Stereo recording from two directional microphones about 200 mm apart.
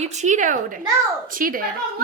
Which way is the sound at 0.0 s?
35° right (ahead or behind).